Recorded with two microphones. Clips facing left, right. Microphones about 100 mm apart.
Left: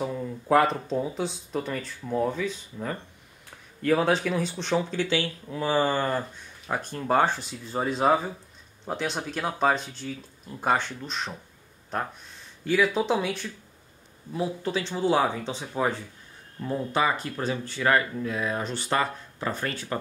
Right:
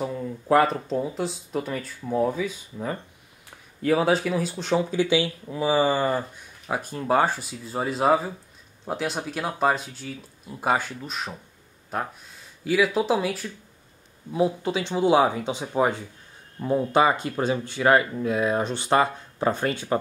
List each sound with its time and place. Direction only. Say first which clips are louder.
0.0 s speech: right 1 dB; centre (ahead or behind)
14.3 s speech: right 5 dB; 15° right (ahead or behind)